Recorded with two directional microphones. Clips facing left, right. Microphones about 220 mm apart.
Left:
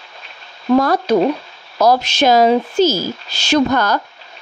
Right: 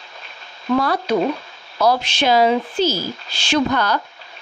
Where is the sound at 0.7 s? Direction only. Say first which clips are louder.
Left 5 dB; 45° left (ahead or behind).